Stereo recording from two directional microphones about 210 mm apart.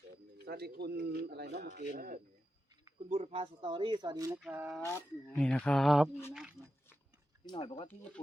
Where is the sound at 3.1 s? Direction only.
30° right (ahead or behind).